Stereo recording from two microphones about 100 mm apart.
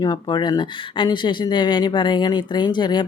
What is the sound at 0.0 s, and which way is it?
Speech, 45° left (ahead or behind).